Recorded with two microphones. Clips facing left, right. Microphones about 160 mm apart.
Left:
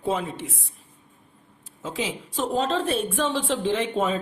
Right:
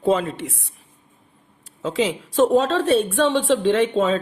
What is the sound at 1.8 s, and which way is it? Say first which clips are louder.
A woman's voice: right 8 dB; 75° right (ahead or behind).